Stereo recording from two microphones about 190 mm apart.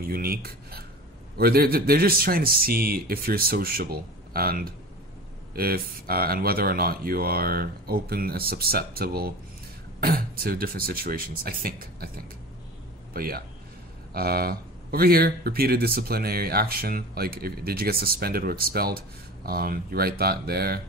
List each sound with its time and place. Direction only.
0.1 s speech: 50° right (ahead or behind)
13.1 s a man's voice: 50° right (ahead or behind)